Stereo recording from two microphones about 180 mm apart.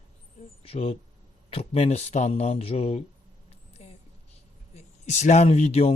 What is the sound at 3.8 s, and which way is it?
Vehicle, 35° left (ahead or behind).